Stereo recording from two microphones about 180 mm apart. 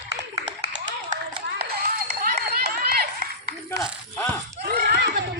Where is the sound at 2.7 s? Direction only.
60° right (ahead or behind).